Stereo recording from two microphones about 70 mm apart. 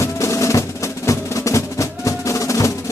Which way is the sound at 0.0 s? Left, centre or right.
Left.